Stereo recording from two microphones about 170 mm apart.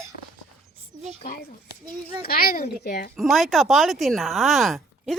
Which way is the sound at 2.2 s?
60° left (ahead or behind).